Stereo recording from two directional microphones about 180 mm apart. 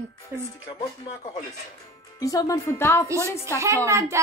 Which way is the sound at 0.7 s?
25° left (ahead or behind).